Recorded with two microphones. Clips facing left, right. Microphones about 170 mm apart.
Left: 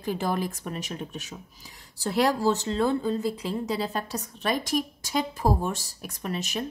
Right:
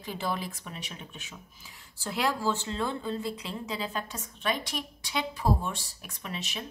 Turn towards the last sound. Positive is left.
turn(degrees=45)  # may be behind; listen again after turning